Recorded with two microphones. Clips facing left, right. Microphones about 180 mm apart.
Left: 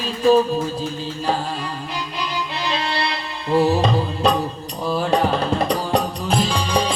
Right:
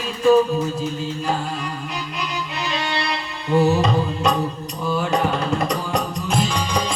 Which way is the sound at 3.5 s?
35° left (ahead or behind).